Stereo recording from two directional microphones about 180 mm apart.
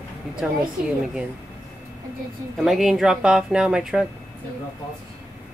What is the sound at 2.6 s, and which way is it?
Speech, centre (ahead or behind).